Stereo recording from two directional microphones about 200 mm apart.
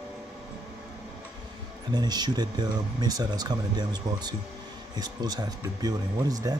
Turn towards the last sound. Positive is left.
turn(degrees=-20)  # may be behind; listen again after turning